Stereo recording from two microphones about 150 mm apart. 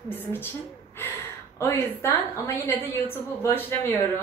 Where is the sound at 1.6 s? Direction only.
15° left (ahead or behind).